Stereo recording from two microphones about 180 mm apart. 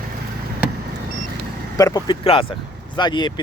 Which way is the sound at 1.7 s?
20° left (ahead or behind).